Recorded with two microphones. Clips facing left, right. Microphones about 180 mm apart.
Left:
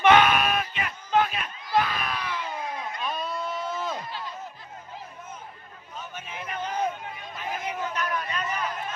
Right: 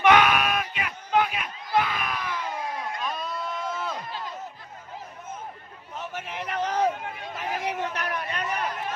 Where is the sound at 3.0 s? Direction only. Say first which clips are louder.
Left 1 dB; 5° left (ahead or behind).